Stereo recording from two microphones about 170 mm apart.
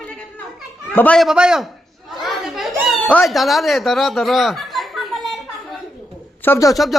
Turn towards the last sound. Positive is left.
turn(degrees=15)  # may be behind; listen again after turning